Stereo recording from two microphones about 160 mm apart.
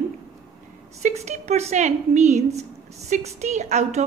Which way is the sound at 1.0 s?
45° right (ahead or behind).